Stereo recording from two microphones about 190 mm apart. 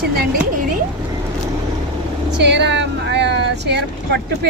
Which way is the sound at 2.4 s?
65° right (ahead or behind).